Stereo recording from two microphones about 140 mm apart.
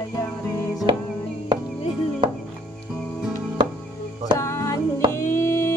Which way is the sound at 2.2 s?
30° right (ahead or behind).